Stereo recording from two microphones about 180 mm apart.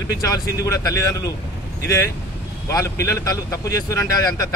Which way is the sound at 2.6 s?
15° left (ahead or behind).